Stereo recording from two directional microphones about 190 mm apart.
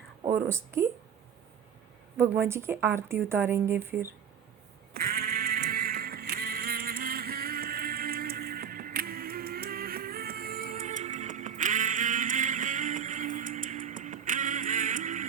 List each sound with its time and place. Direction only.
0.3 s a woman's voice: 15° right (ahead or behind)
2.1 s a woman's voice: 15° right (ahead or behind)
4.9 s music: 50° right (ahead or behind)